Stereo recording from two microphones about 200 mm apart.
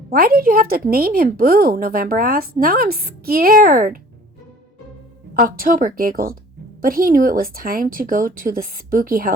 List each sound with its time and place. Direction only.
0.1 s a woman's voice: 45° right (ahead or behind)
5.3 s a woman's voice: 45° right (ahead or behind)